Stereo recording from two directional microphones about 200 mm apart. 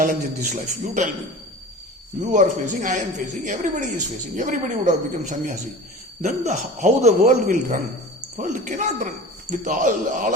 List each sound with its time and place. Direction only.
0.0 s a woman's voice: 40° right (ahead or behind)
2.2 s a woman's voice: 40° right (ahead or behind)